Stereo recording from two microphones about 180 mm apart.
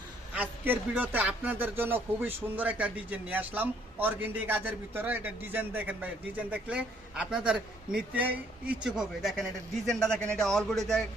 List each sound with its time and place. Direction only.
0.3 s speech: 10° right (ahead or behind)